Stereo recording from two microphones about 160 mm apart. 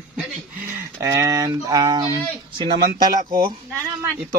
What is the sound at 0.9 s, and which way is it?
Speech, 20° right (ahead or behind).